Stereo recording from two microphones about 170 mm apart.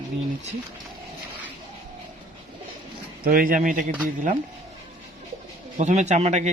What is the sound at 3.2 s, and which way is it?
Speech, 55° right (ahead or behind).